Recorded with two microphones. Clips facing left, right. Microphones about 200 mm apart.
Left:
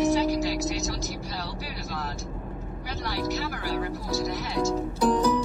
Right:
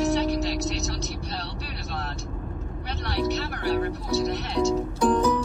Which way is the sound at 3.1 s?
65° right (ahead or behind).